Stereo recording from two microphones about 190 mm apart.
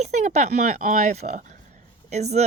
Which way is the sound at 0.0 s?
35° right (ahead or behind).